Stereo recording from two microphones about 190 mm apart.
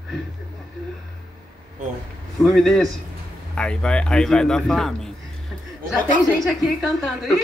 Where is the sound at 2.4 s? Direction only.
Centre (ahead or behind).